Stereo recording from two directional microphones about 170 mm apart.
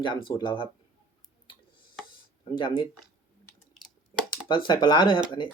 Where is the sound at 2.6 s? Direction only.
25° left (ahead or behind).